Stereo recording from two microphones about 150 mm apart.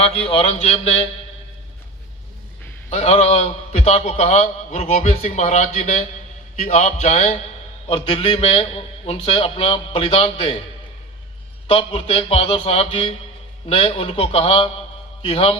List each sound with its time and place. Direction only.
0.0 s a man's voice: 40° left (ahead or behind)
2.9 s a man's voice: 45° left (ahead or behind)
7.9 s a man's voice: 35° left (ahead or behind)
11.7 s a man's voice: 40° left (ahead or behind)